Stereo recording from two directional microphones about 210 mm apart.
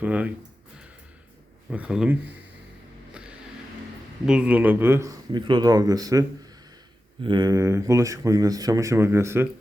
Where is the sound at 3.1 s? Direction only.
5° right (ahead or behind).